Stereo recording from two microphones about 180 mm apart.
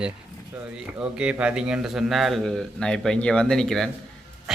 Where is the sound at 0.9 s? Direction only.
5° right (ahead or behind).